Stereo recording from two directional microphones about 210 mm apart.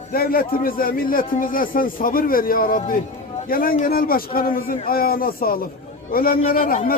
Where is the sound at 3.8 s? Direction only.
45° left (ahead or behind).